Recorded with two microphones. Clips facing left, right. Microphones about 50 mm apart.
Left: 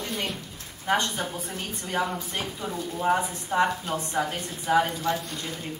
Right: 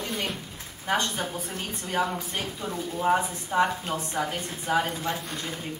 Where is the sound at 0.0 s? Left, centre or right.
Centre.